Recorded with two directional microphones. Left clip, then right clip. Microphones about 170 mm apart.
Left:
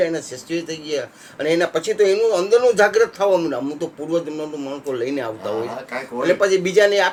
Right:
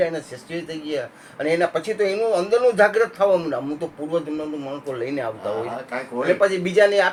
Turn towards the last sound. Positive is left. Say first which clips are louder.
# left 1 dB
turn(degrees=40)  # may be behind; listen again after turning